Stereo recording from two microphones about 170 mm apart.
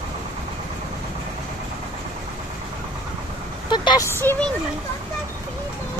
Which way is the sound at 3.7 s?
25° left (ahead or behind).